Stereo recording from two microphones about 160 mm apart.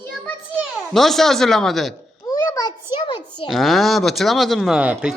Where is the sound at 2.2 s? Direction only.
20° left (ahead or behind).